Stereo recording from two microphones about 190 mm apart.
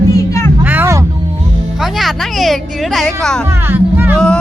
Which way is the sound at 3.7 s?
10° right (ahead or behind).